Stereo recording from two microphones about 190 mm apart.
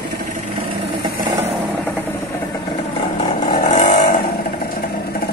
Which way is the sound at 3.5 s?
40° left (ahead or behind).